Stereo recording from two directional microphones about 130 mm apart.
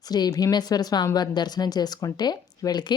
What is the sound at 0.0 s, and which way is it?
Speech, 30° left (ahead or behind).